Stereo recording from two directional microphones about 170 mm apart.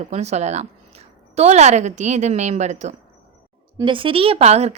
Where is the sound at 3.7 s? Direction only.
30° right (ahead or behind).